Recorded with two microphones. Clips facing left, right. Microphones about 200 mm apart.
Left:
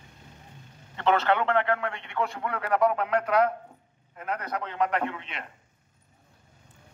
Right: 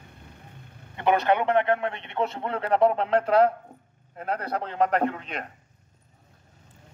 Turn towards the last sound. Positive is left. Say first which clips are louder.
# right 5 dB
turn(degrees=-40)  # may be behind; listen again after turning